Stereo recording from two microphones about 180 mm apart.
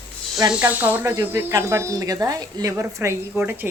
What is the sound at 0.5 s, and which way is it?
Speech, 10° right (ahead or behind).